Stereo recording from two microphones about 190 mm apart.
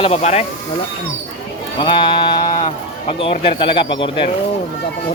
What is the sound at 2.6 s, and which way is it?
Speech, 30° left (ahead or behind).